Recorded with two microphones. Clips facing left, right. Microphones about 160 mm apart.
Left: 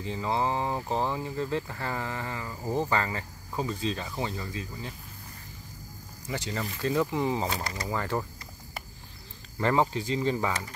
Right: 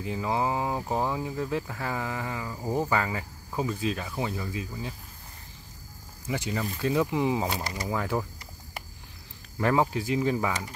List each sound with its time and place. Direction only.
0.0 s speech: 10° right (ahead or behind)
6.2 s speech: 10° right (ahead or behind)
7.9 s speech: 5° right (ahead or behind)
9.6 s speech: 10° right (ahead or behind)